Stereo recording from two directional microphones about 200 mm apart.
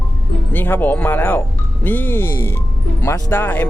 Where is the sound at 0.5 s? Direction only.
10° left (ahead or behind).